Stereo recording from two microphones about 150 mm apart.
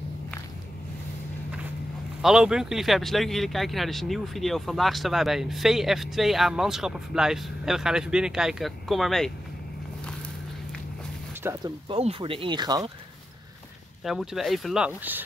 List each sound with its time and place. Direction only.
2.2 s speech: 5° right (ahead or behind)
11.6 s speech: 40° right (ahead or behind)
14.0 s speech: centre (ahead or behind)